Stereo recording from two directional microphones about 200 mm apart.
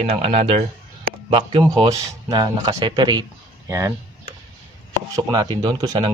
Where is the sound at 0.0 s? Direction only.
30° right (ahead or behind).